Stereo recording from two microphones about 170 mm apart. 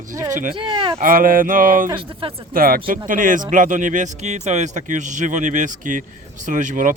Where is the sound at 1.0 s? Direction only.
55° right (ahead or behind).